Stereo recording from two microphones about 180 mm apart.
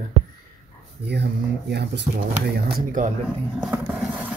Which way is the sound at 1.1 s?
70° right (ahead or behind).